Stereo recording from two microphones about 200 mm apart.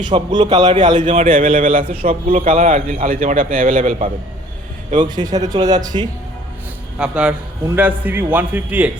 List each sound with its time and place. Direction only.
0.0 s speech: 20° right (ahead or behind)
1.0 s speech: 40° right (ahead or behind)
1.8 s speech: 25° right (ahead or behind)
2.5 s a man's voice: 40° right (ahead or behind)
5.1 s speech: 20° right (ahead or behind)
7.0 s a man's voice: 5° right (ahead or behind)